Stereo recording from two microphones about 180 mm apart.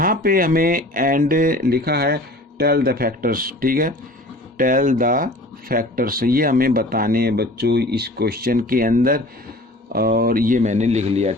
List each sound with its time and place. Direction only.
0.0 s speech: 50° right (ahead or behind); by 11.3 s 35° right (ahead or behind)